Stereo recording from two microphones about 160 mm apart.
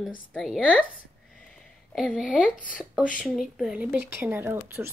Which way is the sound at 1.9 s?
5° right (ahead or behind).